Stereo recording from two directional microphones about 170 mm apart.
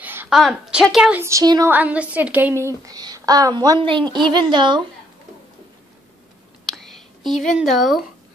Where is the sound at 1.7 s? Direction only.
10° right (ahead or behind); by 4.8 s 25° right (ahead or behind).